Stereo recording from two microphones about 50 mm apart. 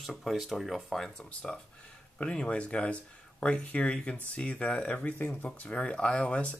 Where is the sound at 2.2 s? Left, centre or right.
Left.